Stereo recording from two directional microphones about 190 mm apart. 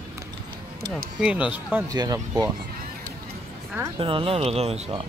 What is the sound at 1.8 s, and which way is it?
Speech, 20° right (ahead or behind).